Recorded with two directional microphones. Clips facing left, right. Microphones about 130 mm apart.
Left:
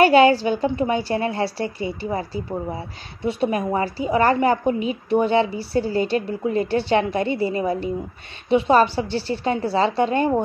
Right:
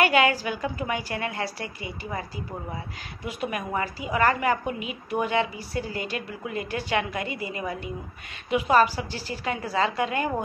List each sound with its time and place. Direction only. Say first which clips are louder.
0.0 s a woman's voice: left 8 dB; 30° left (ahead or behind)